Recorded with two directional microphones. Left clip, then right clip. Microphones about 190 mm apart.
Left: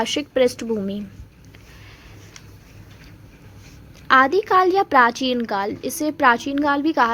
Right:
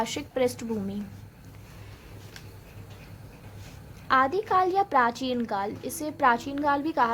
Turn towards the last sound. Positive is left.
turn(degrees=25)  # may be behind; listen again after turning